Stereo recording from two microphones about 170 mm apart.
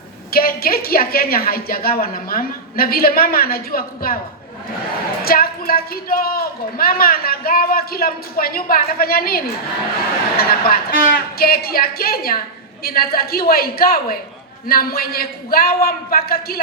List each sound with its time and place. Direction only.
0.3 s a woman's voice: 60° left (ahead or behind)
5.2 s a woman's voice: 60° left (ahead or behind)